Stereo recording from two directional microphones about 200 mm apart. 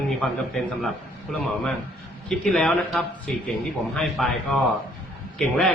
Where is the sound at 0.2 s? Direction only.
Centre (ahead or behind).